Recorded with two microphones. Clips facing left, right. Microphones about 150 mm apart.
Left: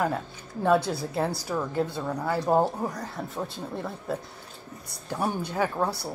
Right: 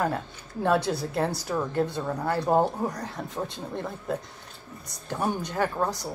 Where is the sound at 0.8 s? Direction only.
Centre (ahead or behind).